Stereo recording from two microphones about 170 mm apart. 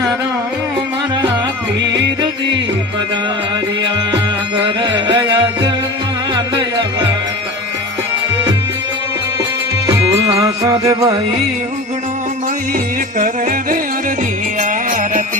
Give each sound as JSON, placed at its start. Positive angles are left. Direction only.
{"t": 4.8, "sound": "music", "side_deg": -25}
{"t": 10.6, "sound": "music", "side_deg": -20}
{"t": 13.1, "sound": "music", "side_deg": -55}